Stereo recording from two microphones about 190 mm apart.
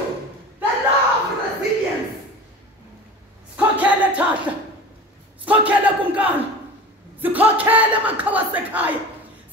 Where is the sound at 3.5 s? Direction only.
5° right (ahead or behind).